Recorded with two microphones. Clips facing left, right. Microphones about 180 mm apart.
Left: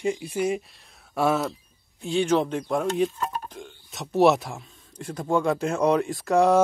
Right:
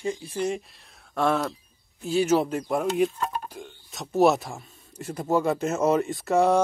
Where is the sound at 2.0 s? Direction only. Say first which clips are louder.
Even; 5° right (ahead or behind).